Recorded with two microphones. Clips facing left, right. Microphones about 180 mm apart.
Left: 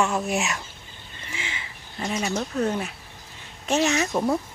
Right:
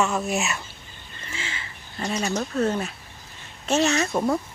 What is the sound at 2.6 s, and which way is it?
Speech, 15° left (ahead or behind).